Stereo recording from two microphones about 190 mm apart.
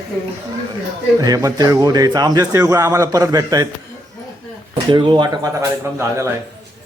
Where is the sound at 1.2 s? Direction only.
20° right (ahead or behind).